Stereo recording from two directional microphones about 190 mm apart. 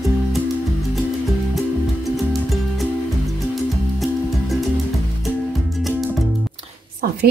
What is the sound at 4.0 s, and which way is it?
Music, centre (ahead or behind).